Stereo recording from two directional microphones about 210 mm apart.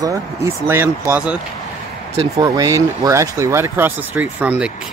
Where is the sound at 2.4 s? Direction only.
15° right (ahead or behind).